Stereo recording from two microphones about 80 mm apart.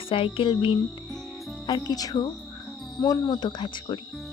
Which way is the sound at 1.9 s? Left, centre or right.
Left.